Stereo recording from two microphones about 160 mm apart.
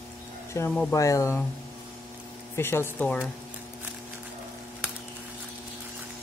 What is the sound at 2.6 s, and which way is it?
Speech, 15° left (ahead or behind).